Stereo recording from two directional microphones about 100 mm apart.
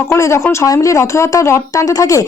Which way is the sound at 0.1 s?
30° left (ahead or behind).